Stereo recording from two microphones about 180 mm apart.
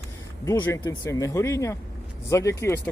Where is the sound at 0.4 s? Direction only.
20° left (ahead or behind).